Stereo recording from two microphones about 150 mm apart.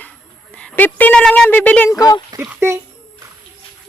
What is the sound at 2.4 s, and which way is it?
Speech, 15° right (ahead or behind).